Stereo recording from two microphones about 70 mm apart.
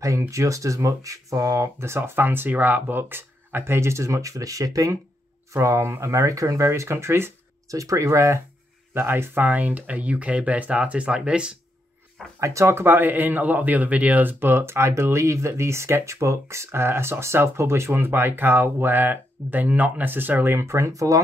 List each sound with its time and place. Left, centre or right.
0.3 s speech: right
5.5 s speech: right
7.6 s speech: right; by 11.5 s centre
12.4 s speech: right